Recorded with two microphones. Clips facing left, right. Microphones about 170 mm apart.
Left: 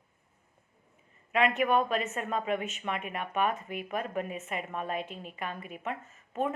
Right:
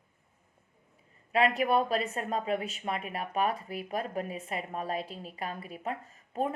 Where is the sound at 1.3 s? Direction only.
35° right (ahead or behind).